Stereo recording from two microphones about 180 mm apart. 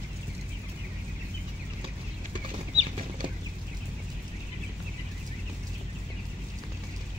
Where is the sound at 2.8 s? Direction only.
35° right (ahead or behind).